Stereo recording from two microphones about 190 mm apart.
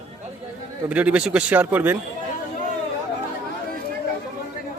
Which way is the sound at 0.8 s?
5° right (ahead or behind).